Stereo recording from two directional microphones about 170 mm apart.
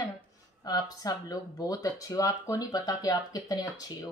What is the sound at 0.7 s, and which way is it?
Speech, 20° left (ahead or behind).